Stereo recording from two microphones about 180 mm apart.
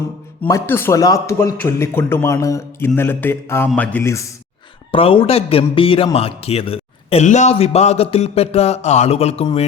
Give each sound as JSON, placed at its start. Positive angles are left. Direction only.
{"t": 0.4, "sound": "speech", "side_deg": 15}
{"t": 4.9, "sound": "a man's voice", "side_deg": 30}